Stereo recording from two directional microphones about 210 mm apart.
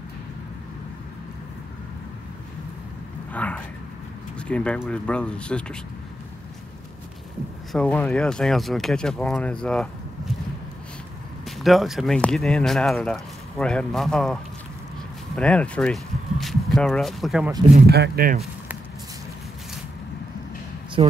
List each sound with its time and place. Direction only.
3.3 s a sound: 5° left (ahead or behind)
4.4 s speech: 5° left (ahead or behind)
7.7 s speech: 5° left (ahead or behind)
11.4 s speech: centre (ahead or behind)
17.7 s speech: 50° right (ahead or behind)
21.0 s speech: 25° right (ahead or behind)